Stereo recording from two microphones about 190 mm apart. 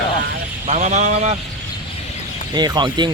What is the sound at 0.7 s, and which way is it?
Speech, 35° right (ahead or behind).